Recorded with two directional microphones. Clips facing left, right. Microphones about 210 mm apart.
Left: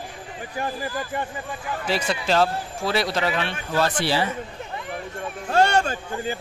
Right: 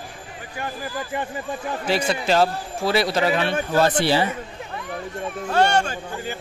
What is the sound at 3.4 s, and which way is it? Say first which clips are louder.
Speech: right 6 dB; 40° right (ahead or behind).